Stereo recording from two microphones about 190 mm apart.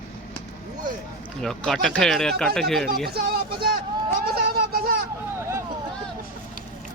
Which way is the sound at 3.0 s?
55° right (ahead or behind).